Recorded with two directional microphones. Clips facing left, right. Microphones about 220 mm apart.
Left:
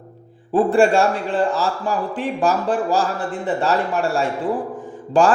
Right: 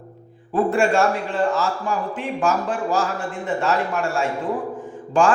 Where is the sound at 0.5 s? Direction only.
35° left (ahead or behind).